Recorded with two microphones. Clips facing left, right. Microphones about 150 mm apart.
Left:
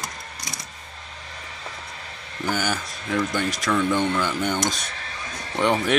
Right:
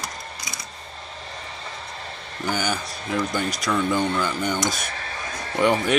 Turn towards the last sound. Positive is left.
turn(degrees=-5)  # may be behind; listen again after turning